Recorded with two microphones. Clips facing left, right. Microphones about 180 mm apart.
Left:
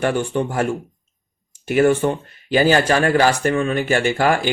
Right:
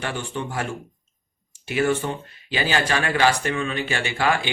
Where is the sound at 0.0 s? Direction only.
45° left (ahead or behind).